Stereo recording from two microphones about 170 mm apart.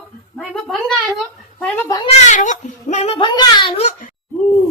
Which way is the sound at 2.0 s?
45° left (ahead or behind).